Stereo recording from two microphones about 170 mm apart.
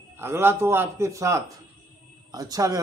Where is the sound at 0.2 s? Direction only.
15° right (ahead or behind).